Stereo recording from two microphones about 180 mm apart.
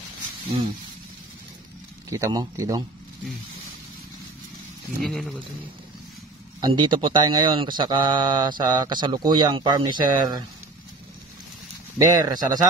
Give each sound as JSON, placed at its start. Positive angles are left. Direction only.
{"t": 2.0, "sound": "speech", "side_deg": -20}
{"t": 5.0, "sound": "speech", "side_deg": 5}
{"t": 6.6, "sound": "speech", "side_deg": -25}
{"t": 12.1, "sound": "speech", "side_deg": -20}